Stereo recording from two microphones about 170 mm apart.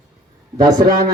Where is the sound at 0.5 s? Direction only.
25° right (ahead or behind).